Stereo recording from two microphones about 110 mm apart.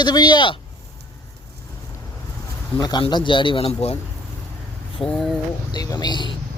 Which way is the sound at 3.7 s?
70° left (ahead or behind).